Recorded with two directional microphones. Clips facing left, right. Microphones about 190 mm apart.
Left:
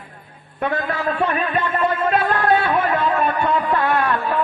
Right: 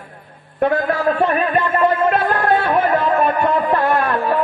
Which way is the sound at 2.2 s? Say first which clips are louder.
Right 1 dB; 45° right (ahead or behind).